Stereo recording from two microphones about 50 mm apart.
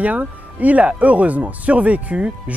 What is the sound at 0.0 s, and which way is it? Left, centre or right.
Speech, right.